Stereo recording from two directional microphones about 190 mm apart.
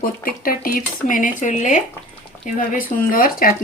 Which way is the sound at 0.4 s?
50° left (ahead or behind).